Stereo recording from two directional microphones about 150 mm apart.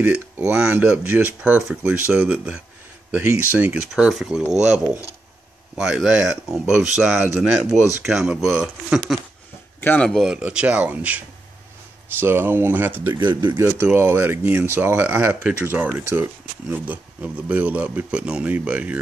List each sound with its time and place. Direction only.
0.5 s speech: 10° right (ahead or behind)
3.9 s speech: 5° right (ahead or behind)
4.6 s speech: 20° left (ahead or behind)
5.8 s speech: 5° right (ahead or behind)
9.8 s speech: 15° left (ahead or behind)
10.0 s speech: centre (ahead or behind)
13.1 s speech: 30° right (ahead or behind)
13.6 s speech: 10° right (ahead or behind)